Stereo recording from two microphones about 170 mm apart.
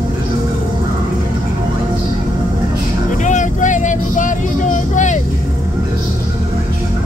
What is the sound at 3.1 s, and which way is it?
Vehicle, 45° left (ahead or behind).